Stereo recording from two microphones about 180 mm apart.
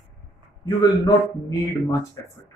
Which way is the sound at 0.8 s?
20° left (ahead or behind).